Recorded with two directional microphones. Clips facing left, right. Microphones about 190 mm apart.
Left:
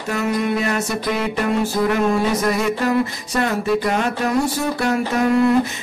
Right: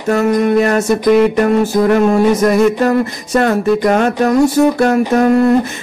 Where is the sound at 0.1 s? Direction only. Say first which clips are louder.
Right 9 dB; 45° right (ahead or behind).